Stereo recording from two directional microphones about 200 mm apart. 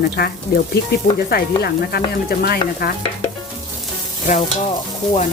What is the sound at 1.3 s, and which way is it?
Speech, 50° left (ahead or behind).